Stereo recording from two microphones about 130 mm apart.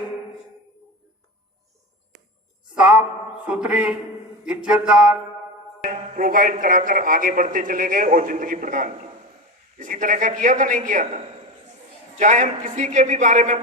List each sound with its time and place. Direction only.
2.7 s a sound: 10° right (ahead or behind)
3.4 s mantra: 10° right (ahead or behind)
5.8 s a man's voice: 90° right; by 13.6 s 70° right (ahead or behind)